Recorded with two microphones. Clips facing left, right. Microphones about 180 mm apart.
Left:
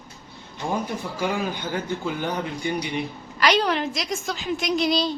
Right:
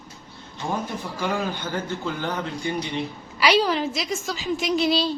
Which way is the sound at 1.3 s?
15° left (ahead or behind).